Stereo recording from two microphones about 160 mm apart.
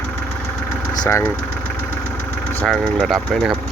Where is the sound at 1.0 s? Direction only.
15° left (ahead or behind).